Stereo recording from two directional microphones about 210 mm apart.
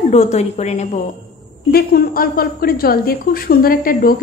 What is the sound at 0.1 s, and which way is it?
Speech, 30° left (ahead or behind).